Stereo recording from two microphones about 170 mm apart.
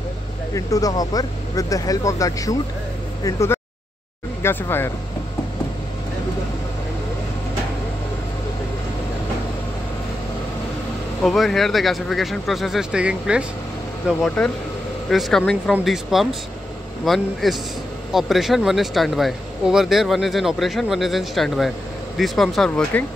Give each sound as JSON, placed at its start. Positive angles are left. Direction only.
{"t": 0.6, "sound": "speech", "side_deg": 20}
{"t": 11.2, "sound": "speech", "side_deg": 0}